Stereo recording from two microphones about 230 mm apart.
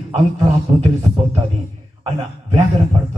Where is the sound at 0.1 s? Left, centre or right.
Centre.